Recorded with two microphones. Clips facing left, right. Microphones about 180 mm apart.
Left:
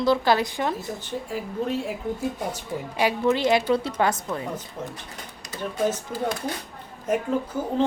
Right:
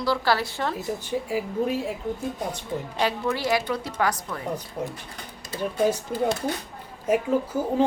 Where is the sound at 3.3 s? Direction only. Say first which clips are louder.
Left 4 dB; 20° left (ahead or behind).